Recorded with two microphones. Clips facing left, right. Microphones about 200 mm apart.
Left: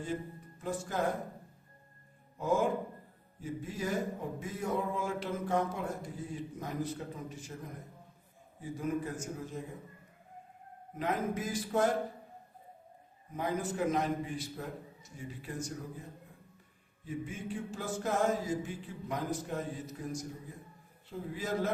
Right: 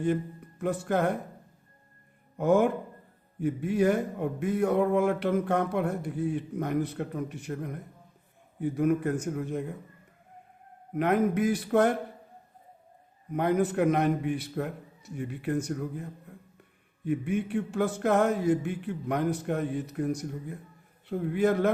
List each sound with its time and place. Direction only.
0.6 s a man's voice: 65° right (ahead or behind)
2.4 s a man's voice: 65° right (ahead or behind)
10.9 s a man's voice: 65° right (ahead or behind)
13.3 s a man's voice: 65° right (ahead or behind)
17.1 s a man's voice: 65° right (ahead or behind)